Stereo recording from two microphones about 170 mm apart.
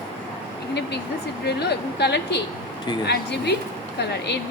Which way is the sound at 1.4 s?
80° left.